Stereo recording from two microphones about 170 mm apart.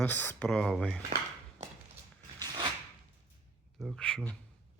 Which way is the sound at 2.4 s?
20° right (ahead or behind).